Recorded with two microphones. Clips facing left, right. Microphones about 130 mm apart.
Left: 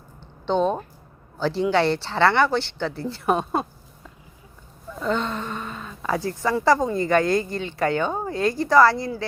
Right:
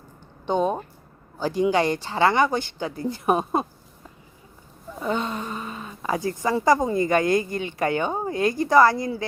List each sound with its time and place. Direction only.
0.4 s speech: 10° right (ahead or behind)
4.9 s a woman's voice: 10° right (ahead or behind)